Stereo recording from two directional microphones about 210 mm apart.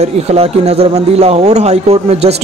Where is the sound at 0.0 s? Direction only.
30° right (ahead or behind).